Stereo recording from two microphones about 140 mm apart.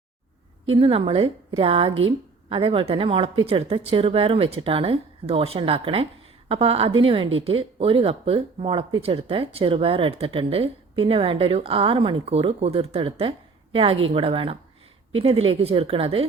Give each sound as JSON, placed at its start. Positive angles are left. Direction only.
{"t": 0.6, "sound": "speech", "side_deg": -40}